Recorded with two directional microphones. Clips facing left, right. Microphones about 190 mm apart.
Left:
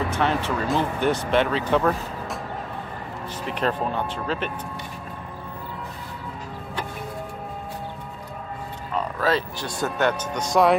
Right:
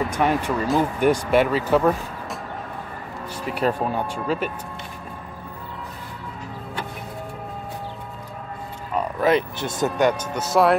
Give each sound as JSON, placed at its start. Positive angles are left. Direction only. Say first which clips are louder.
{"t": 0.1, "sound": "speech", "louder": "right 2 dB", "side_deg": -15}
{"t": 3.4, "sound": "speech", "louder": "right 2 dB", "side_deg": -5}
{"t": 8.9, "sound": "a sound", "louder": "right 4 dB", "side_deg": -20}
{"t": 9.9, "sound": "speech", "louder": "right 2 dB", "side_deg": -10}